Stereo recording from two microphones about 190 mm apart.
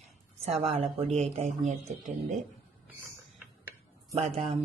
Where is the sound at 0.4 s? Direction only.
30° right (ahead or behind).